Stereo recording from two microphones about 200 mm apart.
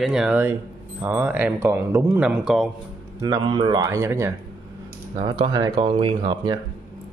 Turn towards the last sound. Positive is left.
turn(degrees=-20)  # may be behind; listen again after turning